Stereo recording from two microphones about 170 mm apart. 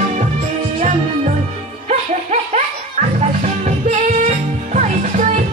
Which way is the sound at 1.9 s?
45° right (ahead or behind).